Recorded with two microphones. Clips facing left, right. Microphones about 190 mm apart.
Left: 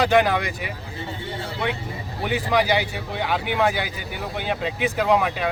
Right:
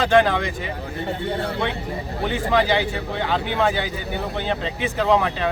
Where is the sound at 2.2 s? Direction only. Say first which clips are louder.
Right 1 dB; 10° left (ahead or behind).